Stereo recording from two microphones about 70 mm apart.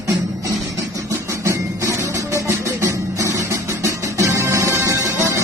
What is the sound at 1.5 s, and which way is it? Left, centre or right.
Music, right.